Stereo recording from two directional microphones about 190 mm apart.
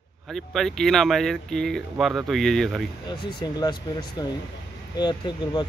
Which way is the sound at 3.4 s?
20° left (ahead or behind).